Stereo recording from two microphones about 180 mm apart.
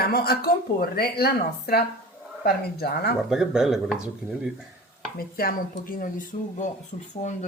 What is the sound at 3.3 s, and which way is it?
Speech, 5° right (ahead or behind).